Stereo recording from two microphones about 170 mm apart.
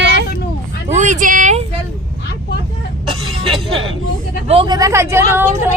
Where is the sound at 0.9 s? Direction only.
45° right (ahead or behind).